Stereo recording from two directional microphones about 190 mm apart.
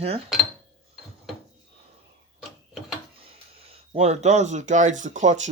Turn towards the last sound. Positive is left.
turn(degrees=-40)  # may be behind; listen again after turning